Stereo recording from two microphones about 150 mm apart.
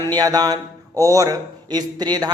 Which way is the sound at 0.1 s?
25° right (ahead or behind).